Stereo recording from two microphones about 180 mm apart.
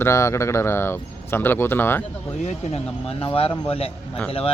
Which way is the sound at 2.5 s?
35° left (ahead or behind).